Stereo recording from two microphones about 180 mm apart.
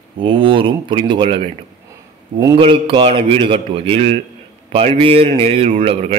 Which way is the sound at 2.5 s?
30° right (ahead or behind).